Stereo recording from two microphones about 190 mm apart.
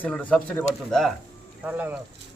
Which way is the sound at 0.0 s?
10° left (ahead or behind).